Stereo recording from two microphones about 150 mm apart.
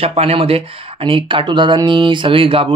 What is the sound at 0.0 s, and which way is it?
Speech, 40° right (ahead or behind).